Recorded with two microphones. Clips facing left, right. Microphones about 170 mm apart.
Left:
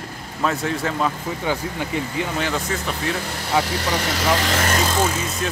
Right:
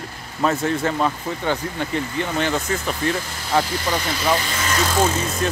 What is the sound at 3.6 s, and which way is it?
Speech, 70° left (ahead or behind).